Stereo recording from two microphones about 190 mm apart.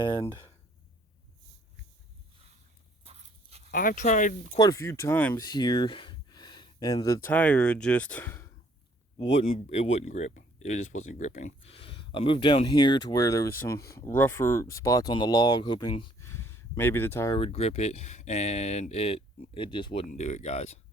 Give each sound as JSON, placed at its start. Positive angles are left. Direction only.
{"t": 0.0, "sound": "speech", "side_deg": 20}
{"t": 3.0, "sound": "a sound", "side_deg": -35}
{"t": 3.7, "sound": "speech", "side_deg": 45}
{"t": 4.5, "sound": "speech", "side_deg": 20}
{"t": 9.1, "sound": "speech", "side_deg": 30}
{"t": 16.2, "sound": "a sound", "side_deg": 15}
{"t": 17.3, "sound": "speech", "side_deg": 30}
{"t": 20.1, "sound": "speech", "side_deg": 35}